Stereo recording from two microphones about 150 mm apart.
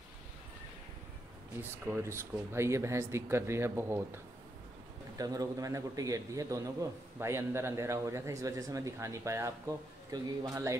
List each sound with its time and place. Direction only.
1.6 s a man's voice: 15° right (ahead or behind)